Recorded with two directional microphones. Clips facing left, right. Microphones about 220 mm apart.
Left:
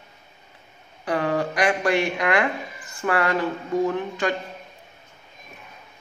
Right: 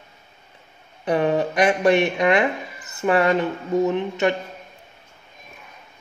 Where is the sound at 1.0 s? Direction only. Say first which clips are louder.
Right 4 dB; 20° right (ahead or behind).